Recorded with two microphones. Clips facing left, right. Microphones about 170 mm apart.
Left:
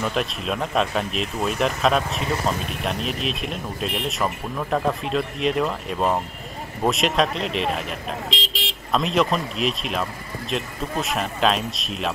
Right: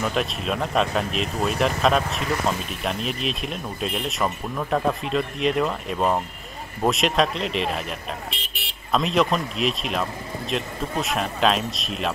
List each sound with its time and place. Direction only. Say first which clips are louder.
0.0 s speech: even; centre (ahead or behind)
8.3 s vehicle: left 7 dB; 90° left
8.9 s speech: even; centre (ahead or behind)